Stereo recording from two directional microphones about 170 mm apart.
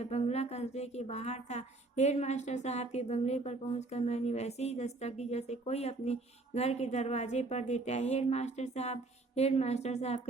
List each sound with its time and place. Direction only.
0.0 s a woman's voice: 40° left (ahead or behind)